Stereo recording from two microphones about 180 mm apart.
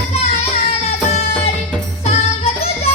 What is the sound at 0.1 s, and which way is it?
Music, 35° left (ahead or behind).